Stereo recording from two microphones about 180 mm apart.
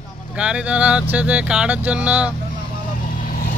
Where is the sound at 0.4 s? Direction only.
5° right (ahead or behind).